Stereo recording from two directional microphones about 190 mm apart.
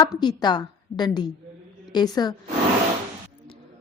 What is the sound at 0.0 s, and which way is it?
A woman's voice, 20° left (ahead or behind).